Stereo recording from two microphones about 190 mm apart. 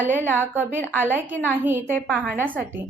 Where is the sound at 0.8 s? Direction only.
10° left (ahead or behind).